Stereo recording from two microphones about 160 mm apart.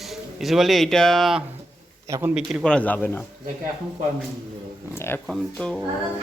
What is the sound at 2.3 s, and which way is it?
Speech, centre (ahead or behind).